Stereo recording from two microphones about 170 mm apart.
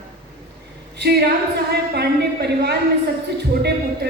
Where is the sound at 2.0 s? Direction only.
75° right (ahead or behind).